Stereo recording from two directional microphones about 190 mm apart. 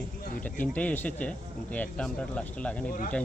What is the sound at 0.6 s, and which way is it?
Speech, 10° left (ahead or behind).